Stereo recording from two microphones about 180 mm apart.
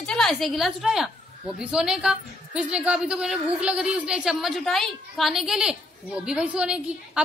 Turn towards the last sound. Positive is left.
turn(degrees=-5)  # may be behind; listen again after turning